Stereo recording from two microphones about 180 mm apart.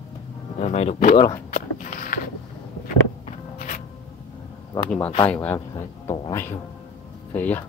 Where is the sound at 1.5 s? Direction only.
50° left (ahead or behind).